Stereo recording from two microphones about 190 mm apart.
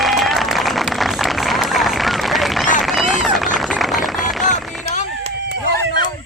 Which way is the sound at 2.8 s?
Centre (ahead or behind).